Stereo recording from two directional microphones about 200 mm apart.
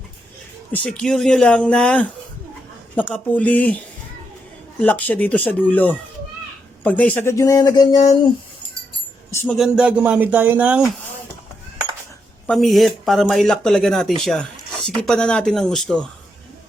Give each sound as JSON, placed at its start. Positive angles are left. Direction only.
{"t": 0.7, "sound": "speech", "side_deg": 5}
{"t": 4.8, "sound": "speech", "side_deg": 10}
{"t": 9.3, "sound": "speech", "side_deg": 10}
{"t": 9.6, "sound": "speech", "side_deg": -5}
{"t": 12.5, "sound": "speech", "side_deg": 0}